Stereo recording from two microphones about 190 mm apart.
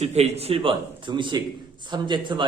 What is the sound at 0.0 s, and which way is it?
A man's voice, 35° right (ahead or behind).